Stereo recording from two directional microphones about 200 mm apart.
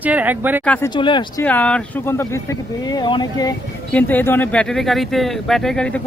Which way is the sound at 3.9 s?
10° left (ahead or behind).